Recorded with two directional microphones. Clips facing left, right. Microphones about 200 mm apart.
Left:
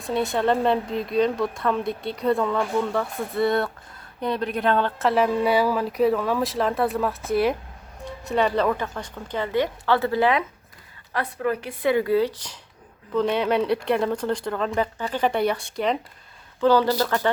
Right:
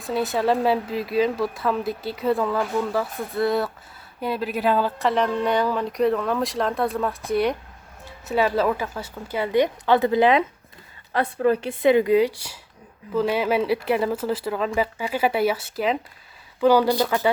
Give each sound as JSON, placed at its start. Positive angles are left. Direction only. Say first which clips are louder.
{"t": 0.0, "sound": "a woman's voice", "louder": "even", "side_deg": 0}